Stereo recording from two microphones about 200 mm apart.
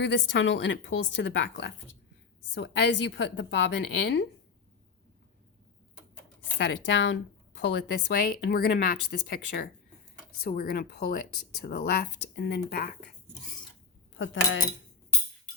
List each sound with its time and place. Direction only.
0.0 s speech: 65° left (ahead or behind)
6.6 s speech: 60° left (ahead or behind)